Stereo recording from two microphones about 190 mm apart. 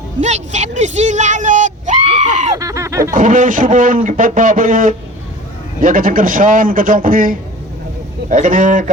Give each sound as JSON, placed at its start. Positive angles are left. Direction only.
{"t": 0.2, "sound": "speech", "side_deg": -35}
{"t": 2.6, "sound": "a sound", "side_deg": -15}
{"t": 3.1, "sound": "speech", "side_deg": -45}